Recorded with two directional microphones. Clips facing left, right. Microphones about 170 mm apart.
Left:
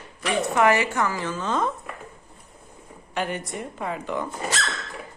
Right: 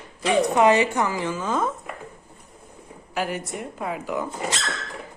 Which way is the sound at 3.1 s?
5° right (ahead or behind).